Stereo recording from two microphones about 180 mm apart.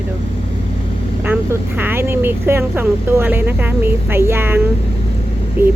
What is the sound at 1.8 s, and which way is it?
Speech, 10° right (ahead or behind).